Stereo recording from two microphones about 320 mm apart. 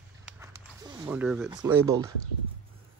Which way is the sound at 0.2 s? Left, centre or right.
Centre.